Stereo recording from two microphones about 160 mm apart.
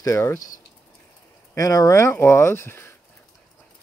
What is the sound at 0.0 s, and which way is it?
Speech, 20° left (ahead or behind).